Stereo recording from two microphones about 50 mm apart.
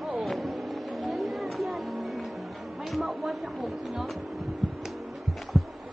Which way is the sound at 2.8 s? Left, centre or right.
Centre.